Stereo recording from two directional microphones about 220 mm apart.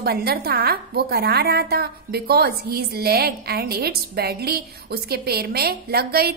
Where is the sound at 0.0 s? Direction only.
45° right (ahead or behind).